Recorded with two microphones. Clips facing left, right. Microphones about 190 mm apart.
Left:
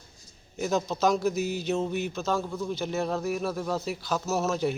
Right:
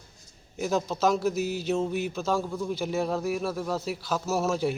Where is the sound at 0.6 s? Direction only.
5° right (ahead or behind).